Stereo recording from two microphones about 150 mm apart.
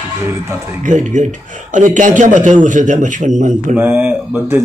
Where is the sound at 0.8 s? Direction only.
55° right (ahead or behind).